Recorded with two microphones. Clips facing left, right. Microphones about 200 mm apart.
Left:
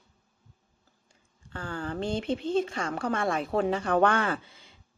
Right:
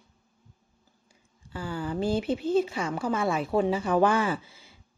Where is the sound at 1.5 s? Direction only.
5° right (ahead or behind).